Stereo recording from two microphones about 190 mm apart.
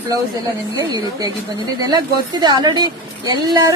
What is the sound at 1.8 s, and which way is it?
A woman's voice, 20° right (ahead or behind).